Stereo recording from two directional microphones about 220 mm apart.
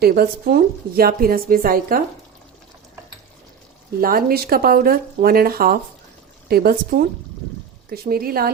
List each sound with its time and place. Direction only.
0.0 s a woman's voice: 45° right (ahead or behind)
4.0 s a woman's voice: 40° right (ahead or behind)